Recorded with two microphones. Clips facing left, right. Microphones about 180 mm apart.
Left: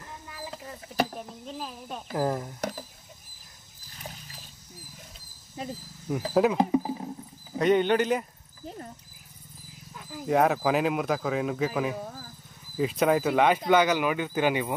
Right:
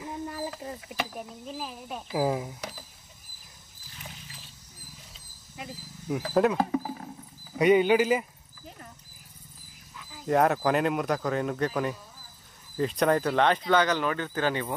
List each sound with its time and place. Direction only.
1.0 s a sound: 35° left (ahead or behind)
1.4 s speech: 5° right (ahead or behind)
4.0 s rodents: 40° left (ahead or behind)
5.6 s speech: 35° left (ahead or behind)
6.1 s speech: 5° right (ahead or behind)
6.5 s a sound: 20° left (ahead or behind)
7.5 s a man's voice: 10° right (ahead or behind)
8.6 s wild animals: 35° left (ahead or behind)
9.9 s cricket: 55° left (ahead or behind)
10.2 s speech: centre (ahead or behind)
11.9 s insect: 65° left (ahead or behind)
12.7 s speech: 5° left (ahead or behind)